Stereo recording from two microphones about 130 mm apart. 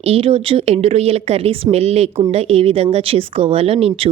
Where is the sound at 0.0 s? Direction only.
45° right (ahead or behind).